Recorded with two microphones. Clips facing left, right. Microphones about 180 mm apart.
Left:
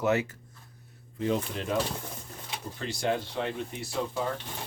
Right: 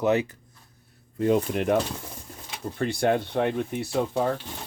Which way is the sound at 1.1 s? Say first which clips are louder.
Right 7 dB; 55° right (ahead or behind).